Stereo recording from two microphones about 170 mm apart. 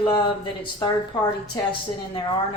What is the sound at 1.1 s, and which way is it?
Speech, 25° left (ahead or behind).